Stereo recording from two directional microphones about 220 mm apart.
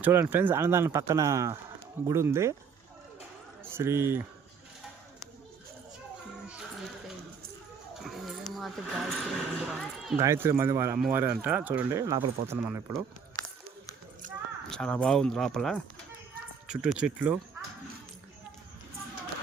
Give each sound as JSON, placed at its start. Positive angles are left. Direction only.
{"t": 0.0, "sound": "speech", "side_deg": -10}
{"t": 3.6, "sound": "a man's voice", "side_deg": -10}
{"t": 8.0, "sound": "speech", "side_deg": 0}
{"t": 10.2, "sound": "speech", "side_deg": -10}
{"t": 14.7, "sound": "speech", "side_deg": 5}